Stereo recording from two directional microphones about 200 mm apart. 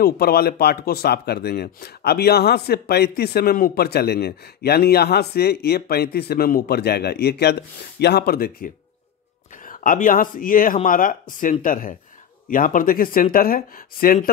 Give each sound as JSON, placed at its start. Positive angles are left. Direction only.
{"t": 0.0, "sound": "speech", "side_deg": 50}